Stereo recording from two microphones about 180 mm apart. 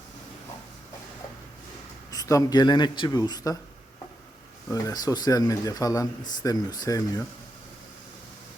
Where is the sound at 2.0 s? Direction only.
20° left (ahead or behind).